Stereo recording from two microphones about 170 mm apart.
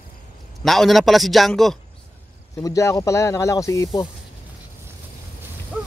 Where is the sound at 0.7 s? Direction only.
Centre (ahead or behind).